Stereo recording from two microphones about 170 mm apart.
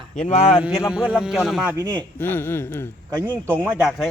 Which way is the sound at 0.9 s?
5° right (ahead or behind).